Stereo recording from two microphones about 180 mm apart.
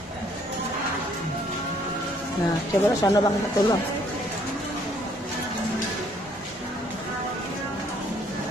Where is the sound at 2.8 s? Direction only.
20° left (ahead or behind).